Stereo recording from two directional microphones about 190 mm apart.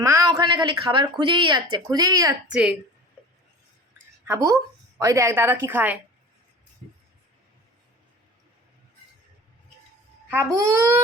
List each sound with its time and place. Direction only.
0.0 s a woman's voice: 15° right (ahead or behind)
2.5 s a woman's voice: 5° right (ahead or behind)
4.9 s a woman's voice: 15° right (ahead or behind)
10.2 s a woman's voice: 15° right (ahead or behind)